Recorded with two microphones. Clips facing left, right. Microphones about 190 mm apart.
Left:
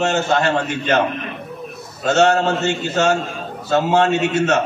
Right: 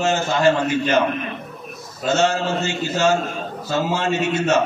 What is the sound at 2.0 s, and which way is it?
A man's voice, 65° left (ahead or behind).